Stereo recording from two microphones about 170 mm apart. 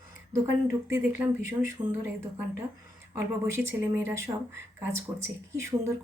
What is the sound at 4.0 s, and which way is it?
Speech, 15° right (ahead or behind).